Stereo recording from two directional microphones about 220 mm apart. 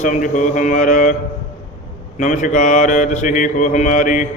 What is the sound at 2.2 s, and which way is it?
Speech, 35° left (ahead or behind).